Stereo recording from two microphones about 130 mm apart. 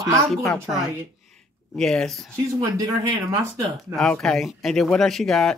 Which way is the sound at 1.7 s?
5° left (ahead or behind).